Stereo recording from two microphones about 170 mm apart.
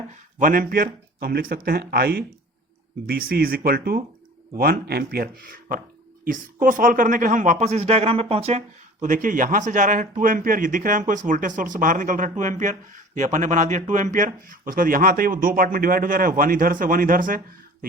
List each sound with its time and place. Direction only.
0.3 s speech: 55° right (ahead or behind)